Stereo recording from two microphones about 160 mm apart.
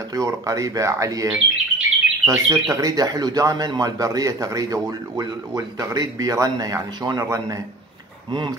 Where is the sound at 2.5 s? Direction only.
20° right (ahead or behind).